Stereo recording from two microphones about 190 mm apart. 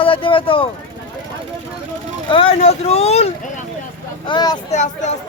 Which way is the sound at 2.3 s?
30° left (ahead or behind).